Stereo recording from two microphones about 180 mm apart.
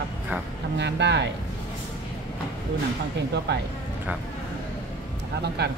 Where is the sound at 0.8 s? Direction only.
75° right (ahead or behind).